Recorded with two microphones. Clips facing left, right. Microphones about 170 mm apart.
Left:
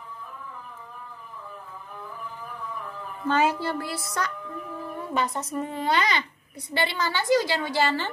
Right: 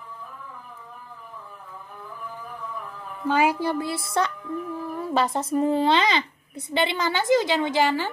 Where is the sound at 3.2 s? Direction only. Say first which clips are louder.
Right 2 dB; 10° right (ahead or behind).